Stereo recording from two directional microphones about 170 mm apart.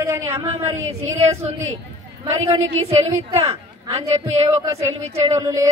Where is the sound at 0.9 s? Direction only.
40° right (ahead or behind).